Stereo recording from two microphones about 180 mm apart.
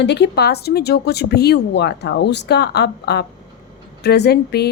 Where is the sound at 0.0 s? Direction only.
70° left (ahead or behind).